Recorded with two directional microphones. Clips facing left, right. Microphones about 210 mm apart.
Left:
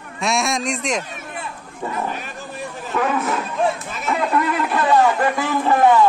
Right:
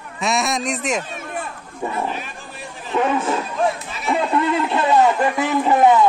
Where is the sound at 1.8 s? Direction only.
15° right (ahead or behind).